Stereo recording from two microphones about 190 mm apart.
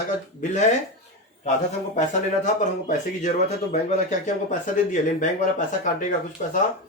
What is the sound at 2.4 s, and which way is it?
Speech, 40° left (ahead or behind).